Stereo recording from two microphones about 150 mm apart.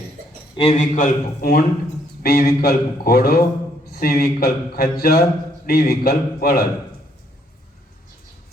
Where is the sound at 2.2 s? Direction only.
90° left.